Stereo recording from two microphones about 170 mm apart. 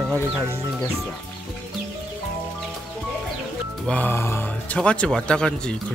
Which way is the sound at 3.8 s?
10° left (ahead or behind).